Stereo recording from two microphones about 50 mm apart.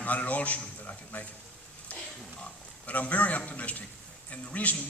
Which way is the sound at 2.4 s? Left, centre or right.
Left.